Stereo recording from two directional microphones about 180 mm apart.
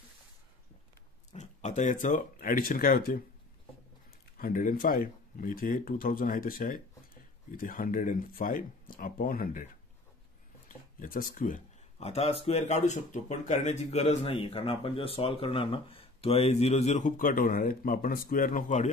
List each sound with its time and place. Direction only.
1.3 s speech: 40° left (ahead or behind)
4.4 s speech: 50° left (ahead or behind)
11.0 s speech: 50° left (ahead or behind)